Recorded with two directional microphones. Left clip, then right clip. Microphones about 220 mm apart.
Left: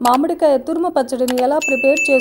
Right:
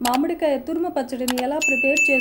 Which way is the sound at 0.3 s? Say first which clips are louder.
Left 7 dB; 30° left (ahead or behind).